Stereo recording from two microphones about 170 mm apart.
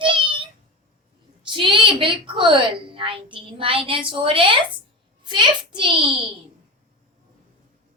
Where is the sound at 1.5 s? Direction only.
30° right (ahead or behind).